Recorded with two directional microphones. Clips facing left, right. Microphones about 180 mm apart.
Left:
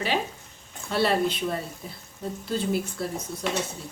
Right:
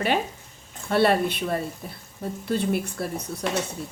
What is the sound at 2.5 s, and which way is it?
Speech, 60° right (ahead or behind).